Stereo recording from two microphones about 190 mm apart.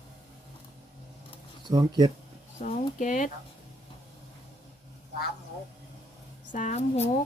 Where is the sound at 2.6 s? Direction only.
40° left (ahead or behind).